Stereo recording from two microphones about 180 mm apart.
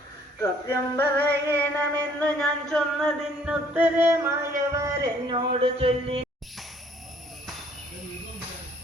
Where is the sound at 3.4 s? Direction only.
10° right (ahead or behind).